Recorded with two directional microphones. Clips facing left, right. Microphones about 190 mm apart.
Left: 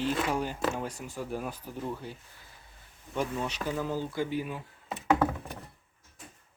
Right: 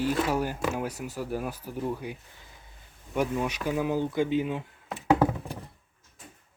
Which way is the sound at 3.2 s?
10° right (ahead or behind).